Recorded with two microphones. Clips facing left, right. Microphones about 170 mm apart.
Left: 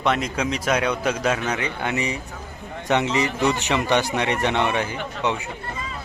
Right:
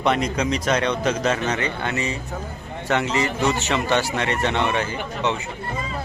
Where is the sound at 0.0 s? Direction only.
Centre (ahead or behind).